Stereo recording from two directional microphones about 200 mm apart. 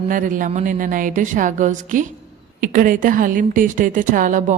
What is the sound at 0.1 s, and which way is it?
Speech, 40° right (ahead or behind).